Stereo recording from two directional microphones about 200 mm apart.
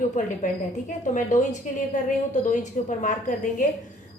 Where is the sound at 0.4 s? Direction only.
40° left (ahead or behind).